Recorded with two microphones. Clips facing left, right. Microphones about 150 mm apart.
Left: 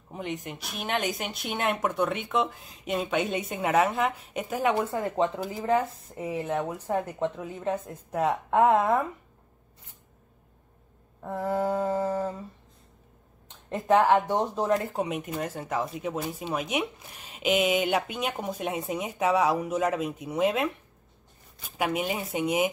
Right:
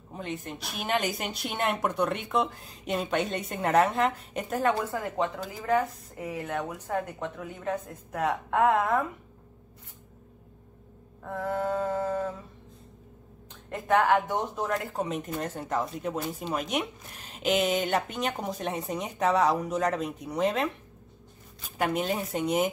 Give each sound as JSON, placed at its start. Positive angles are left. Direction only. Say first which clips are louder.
{"t": 0.1, "sound": "a woman's voice", "louder": "left 1 dB", "side_deg": 15}
{"t": 0.7, "sound": "speech", "louder": "right 1 dB", "side_deg": 0}
{"t": 4.9, "sound": "speech", "louder": "left 3 dB", "side_deg": 25}
{"t": 11.2, "sound": "speech", "louder": "left 2 dB", "side_deg": 25}
{"t": 13.5, "sound": "a sound", "louder": "left 4 dB", "side_deg": 25}
{"t": 14.3, "sound": "speech", "louder": "left 3 dB", "side_deg": 30}
{"t": 14.7, "sound": "speech", "louder": "left 4 dB", "side_deg": 15}
{"t": 21.7, "sound": "speech", "louder": "even", "side_deg": 5}